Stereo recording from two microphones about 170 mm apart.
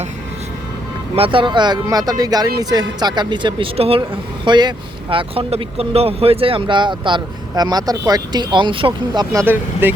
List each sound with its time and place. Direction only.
1.1 s speech: 30° right (ahead or behind); by 9.9 s 15° right (ahead or behind)